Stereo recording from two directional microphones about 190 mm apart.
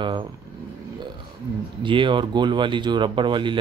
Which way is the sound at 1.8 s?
25° right (ahead or behind).